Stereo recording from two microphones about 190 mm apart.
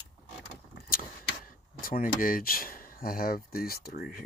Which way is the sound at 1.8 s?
50° left (ahead or behind).